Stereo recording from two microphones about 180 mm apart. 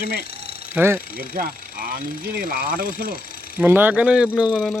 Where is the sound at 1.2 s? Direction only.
55° right (ahead or behind).